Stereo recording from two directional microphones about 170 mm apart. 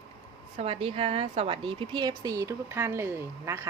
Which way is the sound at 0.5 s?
35° right (ahead or behind).